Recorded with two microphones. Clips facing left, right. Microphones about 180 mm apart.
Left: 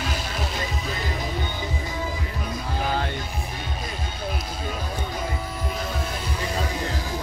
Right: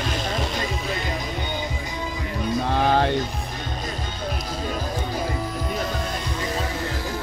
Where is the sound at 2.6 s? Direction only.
65° right (ahead or behind).